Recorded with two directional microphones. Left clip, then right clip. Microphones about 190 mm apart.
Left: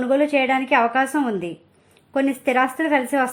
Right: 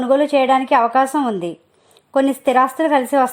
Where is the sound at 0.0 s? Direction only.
45° right (ahead or behind).